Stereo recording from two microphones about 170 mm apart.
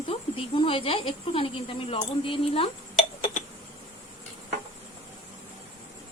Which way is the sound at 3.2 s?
45° left (ahead or behind).